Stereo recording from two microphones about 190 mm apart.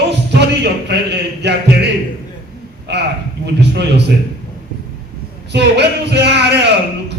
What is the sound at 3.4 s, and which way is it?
Speech, 65° right (ahead or behind).